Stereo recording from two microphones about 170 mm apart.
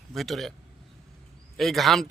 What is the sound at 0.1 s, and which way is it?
Speech, centre (ahead or behind).